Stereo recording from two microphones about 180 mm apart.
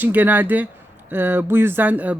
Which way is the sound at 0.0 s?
10° right (ahead or behind).